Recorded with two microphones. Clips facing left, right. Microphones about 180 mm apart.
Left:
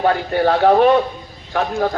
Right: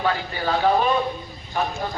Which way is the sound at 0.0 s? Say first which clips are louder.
Left 8 dB; 55° left (ahead or behind).